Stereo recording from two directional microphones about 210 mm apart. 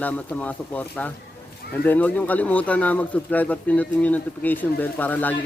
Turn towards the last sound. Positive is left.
turn(degrees=10)  # may be behind; listen again after turning